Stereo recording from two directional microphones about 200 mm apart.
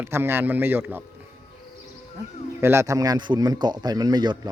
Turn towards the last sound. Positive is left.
turn(degrees=-20)  # may be behind; listen again after turning